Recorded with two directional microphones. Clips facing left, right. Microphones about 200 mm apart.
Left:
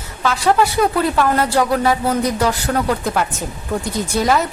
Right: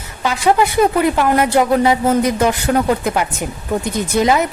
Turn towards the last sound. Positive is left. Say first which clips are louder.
# right 2 dB
turn(degrees=-20)  # may be behind; listen again after turning